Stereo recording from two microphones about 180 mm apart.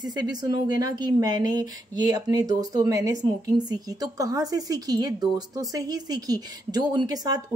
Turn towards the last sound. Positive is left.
turn(degrees=-20)  # may be behind; listen again after turning